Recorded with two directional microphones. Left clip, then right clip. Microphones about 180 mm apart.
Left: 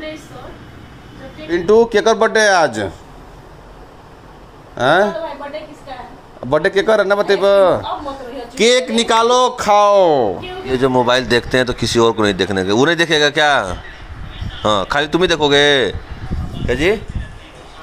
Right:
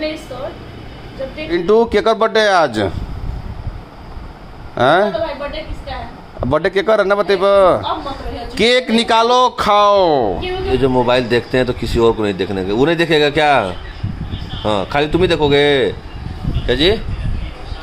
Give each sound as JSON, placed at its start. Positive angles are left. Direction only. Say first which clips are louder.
{"t": 1.5, "sound": "speech", "louder": "left 1 dB", "side_deg": -5}
{"t": 4.7, "sound": "speech", "louder": "right 1 dB", "side_deg": -5}
{"t": 6.4, "sound": "speech", "louder": "left 1 dB", "side_deg": -10}
{"t": 11.0, "sound": "speech", "louder": "left 2 dB", "side_deg": 20}
{"t": 16.6, "sound": "speech", "louder": "right 2 dB", "side_deg": 5}